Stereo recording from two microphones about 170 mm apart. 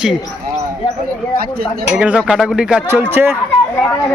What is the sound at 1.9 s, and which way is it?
Speech, 10° right (ahead or behind).